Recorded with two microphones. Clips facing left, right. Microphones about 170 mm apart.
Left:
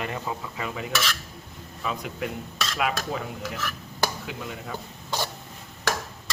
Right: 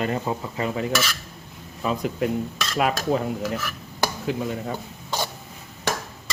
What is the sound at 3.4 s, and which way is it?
Stir, centre (ahead or behind).